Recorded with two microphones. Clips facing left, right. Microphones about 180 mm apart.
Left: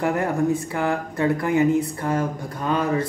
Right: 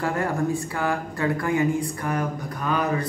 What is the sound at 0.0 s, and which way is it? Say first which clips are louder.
Speech: left 3 dB; 20° left (ahead or behind).